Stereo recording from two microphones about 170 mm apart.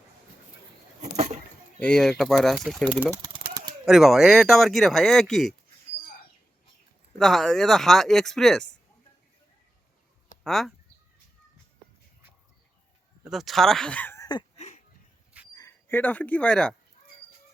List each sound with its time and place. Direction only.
1.1 s a sound: 40° right (ahead or behind)
1.8 s speech: 5° left (ahead or behind)
3.2 s typewriter: 30° right (ahead or behind)
3.8 s speech: centre (ahead or behind)
7.2 s speech: centre (ahead or behind)
10.4 s speech: centre (ahead or behind)
13.2 s speech: centre (ahead or behind)
14.5 s a sound: 45° left (ahead or behind)
15.5 s speech: 15° left (ahead or behind)